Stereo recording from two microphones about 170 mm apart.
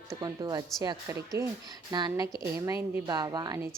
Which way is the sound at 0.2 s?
20° right (ahead or behind).